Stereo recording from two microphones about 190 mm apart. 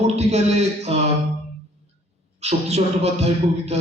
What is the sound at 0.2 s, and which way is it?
Speech, 35° right (ahead or behind).